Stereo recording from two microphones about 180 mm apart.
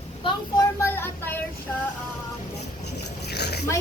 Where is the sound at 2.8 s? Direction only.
65° left (ahead or behind).